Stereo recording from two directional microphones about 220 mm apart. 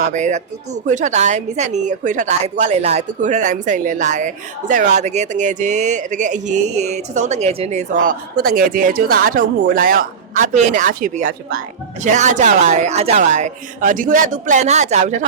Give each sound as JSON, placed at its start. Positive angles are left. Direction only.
{"t": 0.1, "sound": "speech", "side_deg": -35}